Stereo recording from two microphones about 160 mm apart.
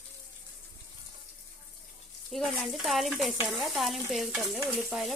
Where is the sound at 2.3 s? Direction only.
Centre (ahead or behind).